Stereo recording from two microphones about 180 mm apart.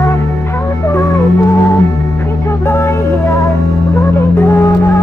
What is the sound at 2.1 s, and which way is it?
Music, 15° left (ahead or behind).